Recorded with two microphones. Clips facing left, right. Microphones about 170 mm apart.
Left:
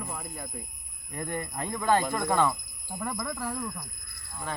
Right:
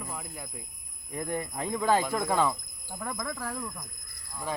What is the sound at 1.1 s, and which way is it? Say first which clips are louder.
Speech: right 1 dB; 5° right (ahead or behind).